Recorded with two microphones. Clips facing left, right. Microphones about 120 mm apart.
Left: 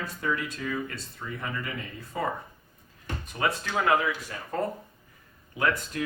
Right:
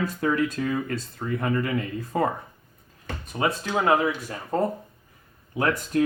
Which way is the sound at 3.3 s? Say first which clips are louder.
Right 3 dB; 25° right (ahead or behind).